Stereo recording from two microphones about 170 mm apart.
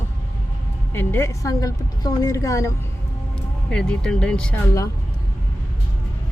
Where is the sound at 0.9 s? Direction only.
15° left (ahead or behind).